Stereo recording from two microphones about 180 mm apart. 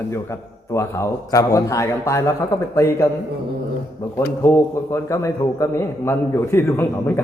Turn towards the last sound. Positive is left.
turn(degrees=10)  # may be behind; listen again after turning